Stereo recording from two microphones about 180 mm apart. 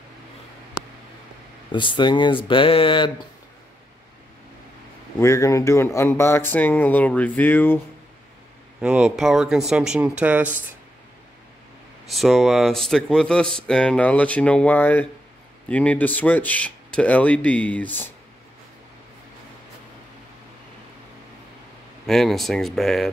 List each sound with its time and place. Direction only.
1.7 s speech: 25° left (ahead or behind)
5.2 s speech: 15° left (ahead or behind)
8.8 s speech: 5° right (ahead or behind)
12.1 s speech: centre (ahead or behind)
22.0 s speech: centre (ahead or behind)